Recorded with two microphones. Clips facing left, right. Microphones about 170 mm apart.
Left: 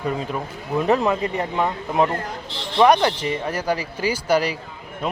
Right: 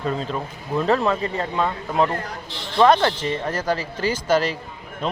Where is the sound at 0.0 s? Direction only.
15° left (ahead or behind).